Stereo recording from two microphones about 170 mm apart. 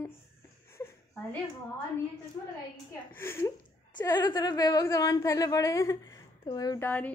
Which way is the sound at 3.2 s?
15° left (ahead or behind).